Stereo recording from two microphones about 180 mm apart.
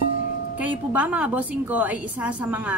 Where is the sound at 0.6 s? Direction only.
10° right (ahead or behind).